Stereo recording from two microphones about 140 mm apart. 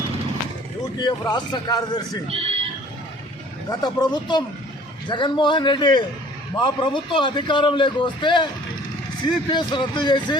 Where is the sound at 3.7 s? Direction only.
30° left (ahead or behind).